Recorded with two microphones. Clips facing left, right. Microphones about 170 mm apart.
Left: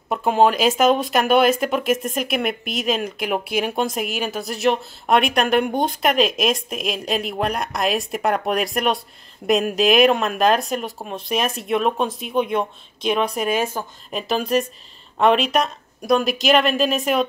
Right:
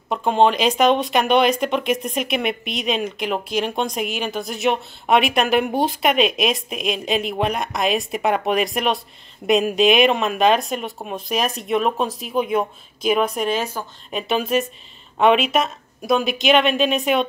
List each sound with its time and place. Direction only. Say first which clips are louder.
0.1 s speech: even; 5° left (ahead or behind)
13.8 s speech: left 1 dB; 15° left (ahead or behind)
14.1 s speech: even; centre (ahead or behind)